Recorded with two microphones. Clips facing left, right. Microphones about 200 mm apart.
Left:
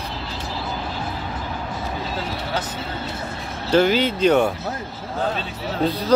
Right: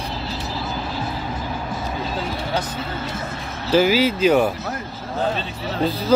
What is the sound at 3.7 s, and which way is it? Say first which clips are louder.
A man's voice: right 1 dB; 5° right (ahead or behind).